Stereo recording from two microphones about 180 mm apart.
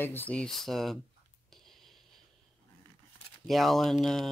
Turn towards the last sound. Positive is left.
turn(degrees=0)  # may be behind; listen again after turning